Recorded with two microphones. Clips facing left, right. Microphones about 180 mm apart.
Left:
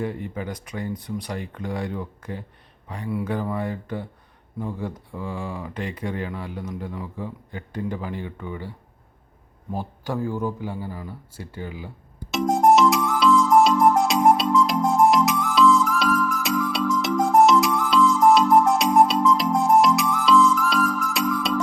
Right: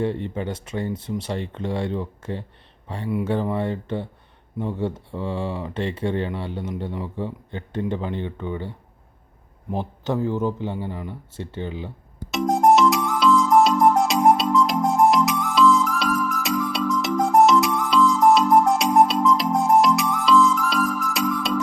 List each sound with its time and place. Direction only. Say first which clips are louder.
0.0 s speech: right 4 dB; 25° right (ahead or behind)
9.7 s speech: right 3 dB; 20° right (ahead or behind)
12.3 s music: even; centre (ahead or behind)